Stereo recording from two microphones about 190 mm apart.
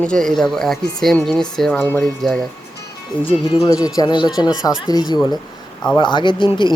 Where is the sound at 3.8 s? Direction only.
20° left (ahead or behind).